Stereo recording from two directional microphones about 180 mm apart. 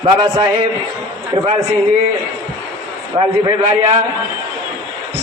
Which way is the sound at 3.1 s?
30° right (ahead or behind).